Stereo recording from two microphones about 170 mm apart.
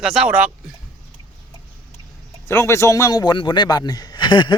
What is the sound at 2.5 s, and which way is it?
A man's voice, 15° left (ahead or behind).